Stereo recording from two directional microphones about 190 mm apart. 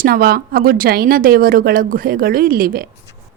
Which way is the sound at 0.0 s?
50° right (ahead or behind).